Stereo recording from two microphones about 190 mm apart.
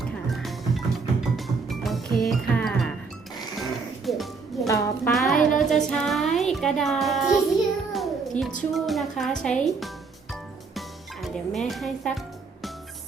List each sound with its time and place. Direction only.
0.3 s music: centre (ahead or behind)
4.6 s music: 15° left (ahead or behind)
5.1 s music: centre (ahead or behind)
8.7 s a woman's voice: centre (ahead or behind)
10.8 s music: centre (ahead or behind)